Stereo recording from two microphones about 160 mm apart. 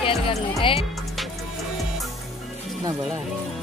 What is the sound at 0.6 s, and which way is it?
Speech, 35° left (ahead or behind).